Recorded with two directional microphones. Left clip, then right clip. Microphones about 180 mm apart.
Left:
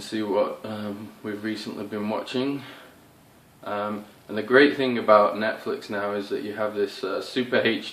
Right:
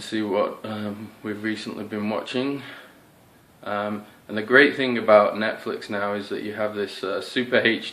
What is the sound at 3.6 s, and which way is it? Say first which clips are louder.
Speech: right 2 dB; 35° right (ahead or behind).